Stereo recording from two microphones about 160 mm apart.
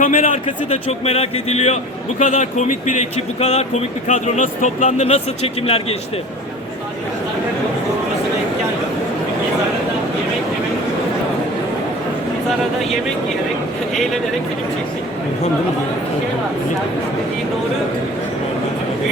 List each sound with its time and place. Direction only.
0.0 s a man's voice: 55° left (ahead or behind)
0.7 s a man's voice: 40° left (ahead or behind)